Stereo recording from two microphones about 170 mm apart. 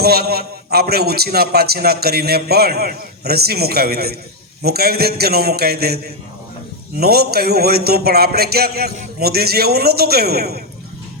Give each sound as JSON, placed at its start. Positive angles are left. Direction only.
{"t": 0.0, "sound": "a man's voice", "side_deg": -65}
{"t": 7.0, "sound": "a man's voice", "side_deg": -65}